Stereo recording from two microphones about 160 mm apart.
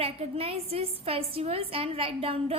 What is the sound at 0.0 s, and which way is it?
A woman's voice, 35° right (ahead or behind).